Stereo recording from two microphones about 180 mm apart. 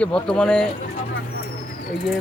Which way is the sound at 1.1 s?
65° left (ahead or behind).